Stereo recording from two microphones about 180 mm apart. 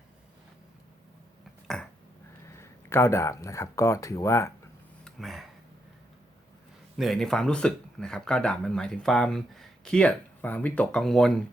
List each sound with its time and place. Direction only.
1.6 s a sound: 5° left (ahead or behind)
2.6 s speech: 15° left (ahead or behind)
5.0 s speech: centre (ahead or behind)
6.9 s speech: centre (ahead or behind)